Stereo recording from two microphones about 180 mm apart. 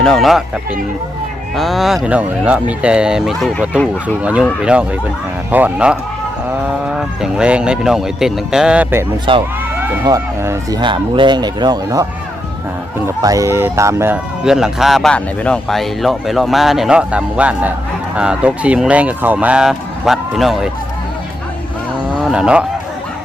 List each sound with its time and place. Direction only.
0.0 s speech: centre (ahead or behind)
9.3 s speech: 30° right (ahead or behind)
10.1 s speech: 15° right (ahead or behind)
13.1 s speech: 20° right (ahead or behind)
14.4 s speech: 5° right (ahead or behind)
22.2 s speech: 5° right (ahead or behind)